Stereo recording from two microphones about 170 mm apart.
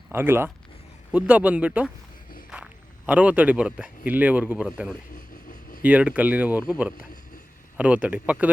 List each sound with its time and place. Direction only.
0.1 s speech: 15° right (ahead or behind)
3.1 s speech: 10° right (ahead or behind)
5.1 s vehicle: 50° left (ahead or behind)
5.8 s speech: 5° right (ahead or behind)